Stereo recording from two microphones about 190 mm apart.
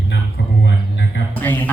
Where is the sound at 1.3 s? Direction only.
10° left (ahead or behind).